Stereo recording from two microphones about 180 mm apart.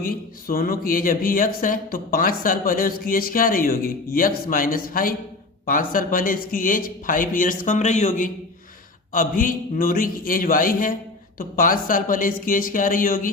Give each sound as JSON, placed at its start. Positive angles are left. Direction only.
{"t": 0.0, "sound": "speech", "side_deg": 55}